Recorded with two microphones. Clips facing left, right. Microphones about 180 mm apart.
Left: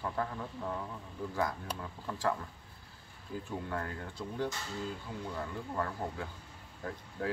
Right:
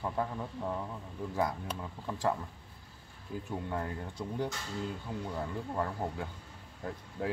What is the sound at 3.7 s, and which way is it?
Speech, 20° right (ahead or behind).